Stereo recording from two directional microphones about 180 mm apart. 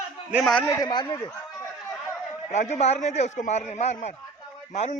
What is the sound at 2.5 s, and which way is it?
A man's voice, 40° left (ahead or behind).